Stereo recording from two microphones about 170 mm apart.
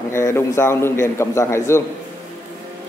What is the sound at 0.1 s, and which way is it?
A man's voice, 15° left (ahead or behind).